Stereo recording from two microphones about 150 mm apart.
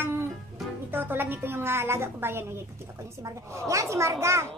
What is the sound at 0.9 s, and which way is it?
A woman's voice, 15° right (ahead or behind).